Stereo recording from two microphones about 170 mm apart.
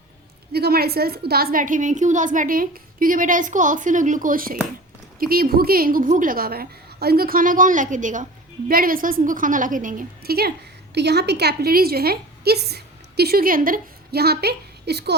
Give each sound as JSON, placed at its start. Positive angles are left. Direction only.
{"t": 0.5, "sound": "a woman's voice", "side_deg": -65}
{"t": 10.9, "sound": "a woman's voice", "side_deg": -75}